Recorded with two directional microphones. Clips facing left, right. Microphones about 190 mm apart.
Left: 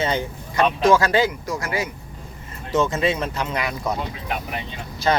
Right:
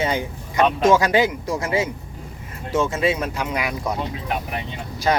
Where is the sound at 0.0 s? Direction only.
10° right (ahead or behind).